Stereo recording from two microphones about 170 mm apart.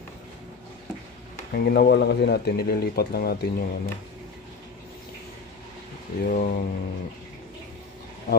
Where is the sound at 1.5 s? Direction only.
65° left (ahead or behind).